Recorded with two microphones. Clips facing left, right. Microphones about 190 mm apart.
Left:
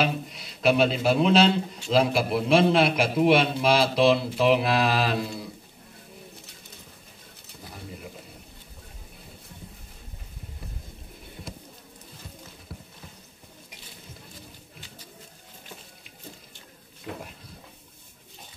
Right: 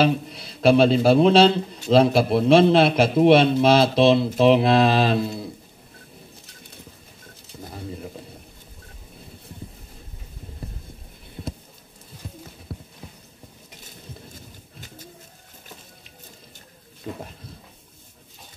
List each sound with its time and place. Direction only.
0.0 s speech: 30° right (ahead or behind)